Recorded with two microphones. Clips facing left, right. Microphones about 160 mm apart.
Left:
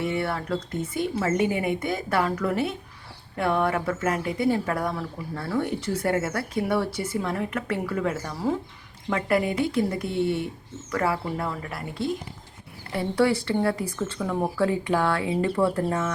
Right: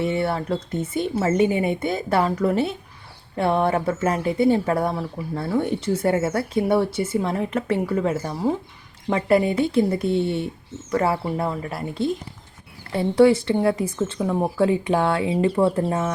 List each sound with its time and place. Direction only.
0.0 s speech: 25° right (ahead or behind)